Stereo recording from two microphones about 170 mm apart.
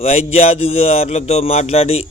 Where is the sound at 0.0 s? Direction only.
35° left (ahead or behind).